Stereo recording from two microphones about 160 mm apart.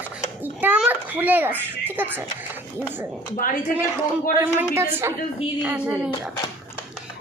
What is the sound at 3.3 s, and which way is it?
Speech, 60° left (ahead or behind).